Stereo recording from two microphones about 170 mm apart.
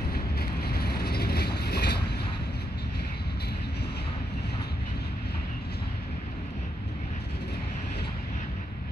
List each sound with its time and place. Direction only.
0.1 s boat: 70° left (ahead or behind)